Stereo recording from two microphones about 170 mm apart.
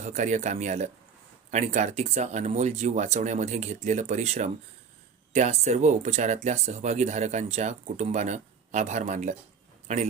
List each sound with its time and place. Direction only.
0.0 s a man's voice: 45° right (ahead or behind)